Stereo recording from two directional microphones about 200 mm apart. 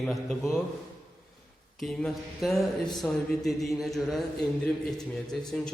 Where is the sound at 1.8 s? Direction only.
Centre (ahead or behind).